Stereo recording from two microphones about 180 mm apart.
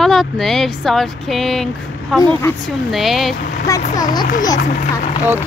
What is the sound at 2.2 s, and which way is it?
Speech, 15° left (ahead or behind).